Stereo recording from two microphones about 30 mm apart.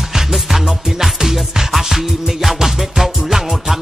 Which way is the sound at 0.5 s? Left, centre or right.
Centre.